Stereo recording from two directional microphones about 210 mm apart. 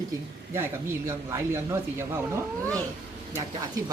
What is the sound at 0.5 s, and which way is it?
Speech, 10° right (ahead or behind).